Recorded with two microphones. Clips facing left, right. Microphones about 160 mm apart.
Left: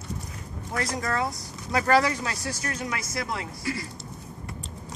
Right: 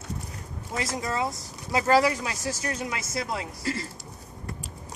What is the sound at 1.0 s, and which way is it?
A woman's voice, 20° right (ahead or behind).